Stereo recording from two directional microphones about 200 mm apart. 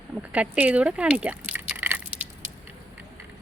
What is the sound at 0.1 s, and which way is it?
Speech, 5° right (ahead or behind).